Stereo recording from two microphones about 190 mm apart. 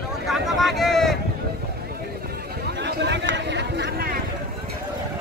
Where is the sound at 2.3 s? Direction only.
60° right (ahead or behind).